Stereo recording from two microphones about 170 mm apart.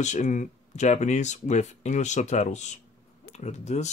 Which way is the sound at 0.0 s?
45° left (ahead or behind).